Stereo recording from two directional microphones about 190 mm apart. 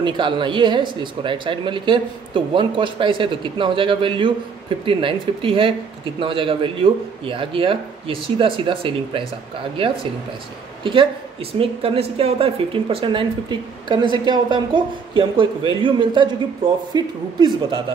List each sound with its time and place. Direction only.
0.0 s speech: 25° right (ahead or behind)
10.8 s a woman's voice: 25° right (ahead or behind)